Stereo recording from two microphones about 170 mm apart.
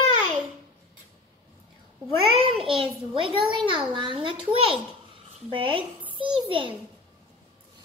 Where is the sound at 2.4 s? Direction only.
30° right (ahead or behind).